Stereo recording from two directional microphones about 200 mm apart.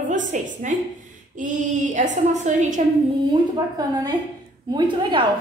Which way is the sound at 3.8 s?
20° right (ahead or behind).